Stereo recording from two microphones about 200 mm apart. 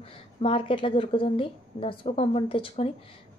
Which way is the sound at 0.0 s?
25° left (ahead or behind).